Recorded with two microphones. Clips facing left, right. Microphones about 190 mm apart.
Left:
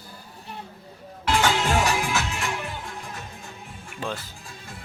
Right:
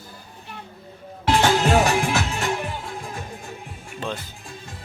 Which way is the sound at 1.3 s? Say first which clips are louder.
Right 4 dB; 40° right (ahead or behind).